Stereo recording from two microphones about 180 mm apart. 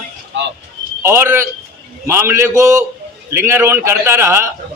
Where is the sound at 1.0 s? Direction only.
15° right (ahead or behind).